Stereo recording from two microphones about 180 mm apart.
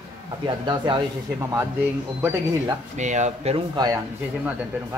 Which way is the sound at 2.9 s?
40° right (ahead or behind).